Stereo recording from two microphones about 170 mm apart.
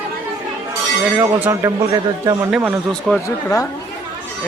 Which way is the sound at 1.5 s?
15° right (ahead or behind).